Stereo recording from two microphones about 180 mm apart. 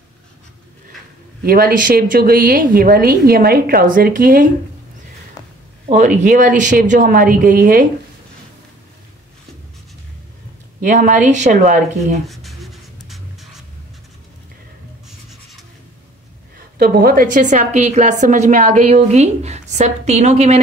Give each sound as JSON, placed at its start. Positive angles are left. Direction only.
{"t": 1.4, "sound": "a woman's voice", "side_deg": -55}
{"t": 5.9, "sound": "speech", "side_deg": -40}
{"t": 10.8, "sound": "speech", "side_deg": -50}
{"t": 12.3, "sound": "writing", "side_deg": 0}
{"t": 16.5, "sound": "a woman's voice", "side_deg": -55}